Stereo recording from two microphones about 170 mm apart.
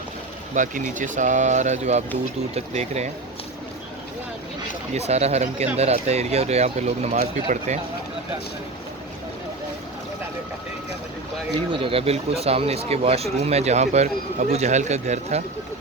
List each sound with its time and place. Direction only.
0.5 s speech: 50° right (ahead or behind)
4.9 s speech: 40° right (ahead or behind)
11.7 s speech: 35° right (ahead or behind)